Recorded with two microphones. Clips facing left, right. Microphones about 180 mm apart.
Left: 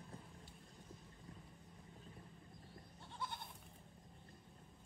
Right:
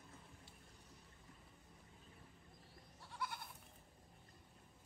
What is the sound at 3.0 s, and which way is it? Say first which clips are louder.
Goat: right 1 dB; 25° left (ahead or behind).